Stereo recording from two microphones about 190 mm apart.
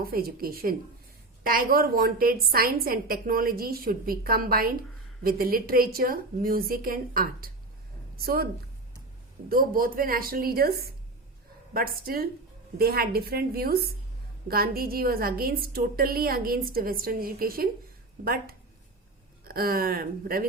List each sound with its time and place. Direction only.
0.0 s a woman's voice: 50° right (ahead or behind)
9.5 s a woman's voice: 50° right (ahead or behind)
19.5 s a woman's voice: 50° right (ahead or behind)